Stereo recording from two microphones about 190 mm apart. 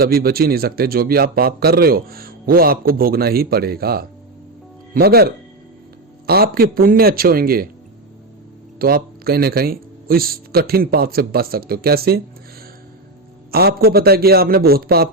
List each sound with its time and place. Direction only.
0.0 s a man's voice: 50° right (ahead or behind)
8.8 s speech: 50° right (ahead or behind)
13.5 s a man's voice: 55° right (ahead or behind)